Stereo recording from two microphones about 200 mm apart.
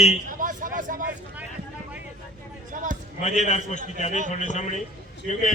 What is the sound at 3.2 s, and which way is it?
A man's voice, 35° left (ahead or behind).